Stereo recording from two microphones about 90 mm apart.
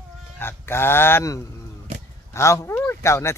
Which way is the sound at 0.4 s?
25° left (ahead or behind).